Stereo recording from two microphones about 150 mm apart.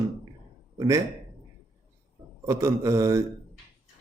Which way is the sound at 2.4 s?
20° right (ahead or behind).